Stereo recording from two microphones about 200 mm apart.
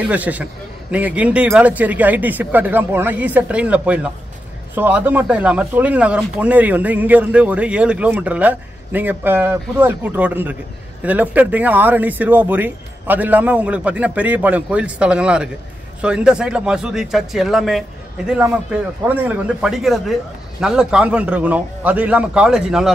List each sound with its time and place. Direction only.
0.0 s speech: 5° right (ahead or behind)